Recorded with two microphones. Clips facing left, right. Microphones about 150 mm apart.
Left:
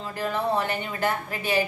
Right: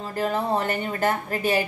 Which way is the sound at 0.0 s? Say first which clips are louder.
Right 2 dB; 40° right (ahead or behind).